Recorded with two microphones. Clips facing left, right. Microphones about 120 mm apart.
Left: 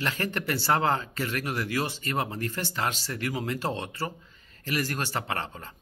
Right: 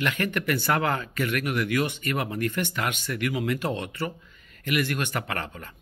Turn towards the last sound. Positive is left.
turn(degrees=25)  # may be behind; listen again after turning